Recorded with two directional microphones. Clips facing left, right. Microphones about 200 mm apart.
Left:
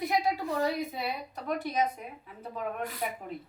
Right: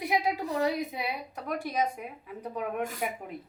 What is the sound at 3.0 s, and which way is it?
Speech, 10° right (ahead or behind).